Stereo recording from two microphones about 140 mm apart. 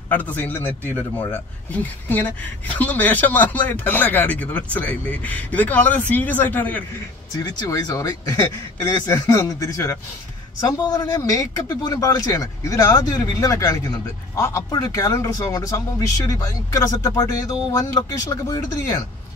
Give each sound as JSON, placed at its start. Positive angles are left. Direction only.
{"t": 0.1, "sound": "speech", "side_deg": 10}
{"t": 7.3, "sound": "speech", "side_deg": 30}